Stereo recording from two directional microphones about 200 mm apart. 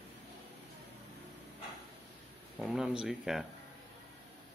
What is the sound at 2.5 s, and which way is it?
Speech, 5° right (ahead or behind).